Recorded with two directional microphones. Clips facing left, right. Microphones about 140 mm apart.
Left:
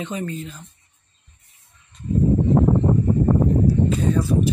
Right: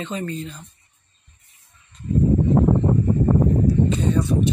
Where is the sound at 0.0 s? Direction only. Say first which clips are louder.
Even; 10° left (ahead or behind).